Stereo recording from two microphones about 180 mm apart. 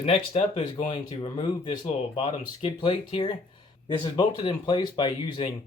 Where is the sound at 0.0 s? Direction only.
35° left (ahead or behind).